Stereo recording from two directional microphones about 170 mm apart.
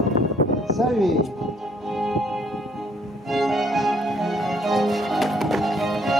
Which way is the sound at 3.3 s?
Centre (ahead or behind).